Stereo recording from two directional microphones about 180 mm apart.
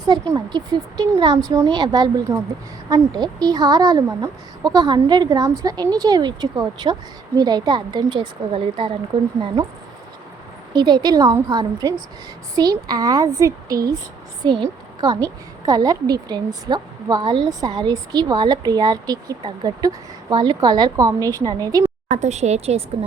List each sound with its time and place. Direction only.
0.3 s a woman's voice: 25° right (ahead or behind)
10.8 s a woman's voice: 25° right (ahead or behind)
22.1 s speech: 40° right (ahead or behind)